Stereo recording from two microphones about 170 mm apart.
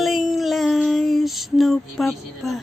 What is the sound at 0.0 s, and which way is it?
Female singing, centre (ahead or behind).